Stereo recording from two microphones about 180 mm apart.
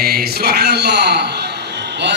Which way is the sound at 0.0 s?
60° right (ahead or behind).